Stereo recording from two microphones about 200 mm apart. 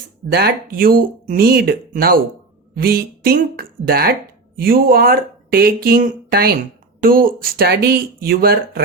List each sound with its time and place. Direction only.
0.3 s speech: 50° right (ahead or behind)